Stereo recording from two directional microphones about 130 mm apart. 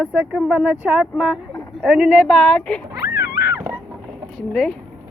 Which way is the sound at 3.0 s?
25° right (ahead or behind).